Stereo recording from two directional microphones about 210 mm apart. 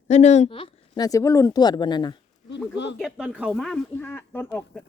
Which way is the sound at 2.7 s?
55° left (ahead or behind).